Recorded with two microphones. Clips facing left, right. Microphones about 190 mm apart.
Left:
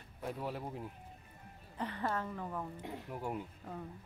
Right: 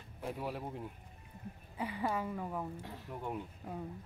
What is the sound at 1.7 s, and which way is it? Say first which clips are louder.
Speech: right 1 dB; 10° right (ahead or behind).